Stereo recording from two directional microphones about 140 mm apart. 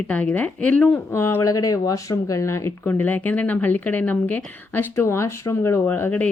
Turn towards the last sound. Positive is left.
turn(degrees=10)  # may be behind; listen again after turning